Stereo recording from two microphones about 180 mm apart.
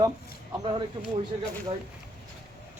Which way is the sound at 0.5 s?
25° right (ahead or behind).